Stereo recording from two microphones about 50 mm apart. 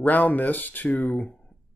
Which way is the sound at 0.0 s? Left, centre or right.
Left.